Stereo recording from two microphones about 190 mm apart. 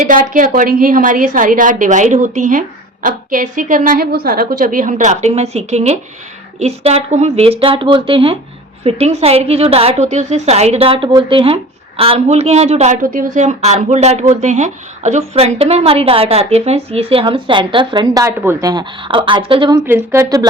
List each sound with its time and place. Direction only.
0.1 s a woman's voice: 45° right (ahead or behind); by 19.8 s 25° right (ahead or behind)
19.8 s a woman's voice: 10° right (ahead or behind)